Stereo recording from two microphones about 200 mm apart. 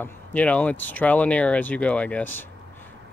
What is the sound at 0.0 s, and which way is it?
Speech, 5° left (ahead or behind).